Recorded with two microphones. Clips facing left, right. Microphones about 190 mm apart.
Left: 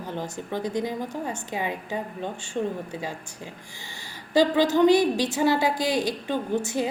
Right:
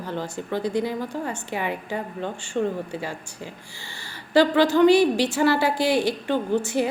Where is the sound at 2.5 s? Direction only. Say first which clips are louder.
Right 3 dB; 90° right.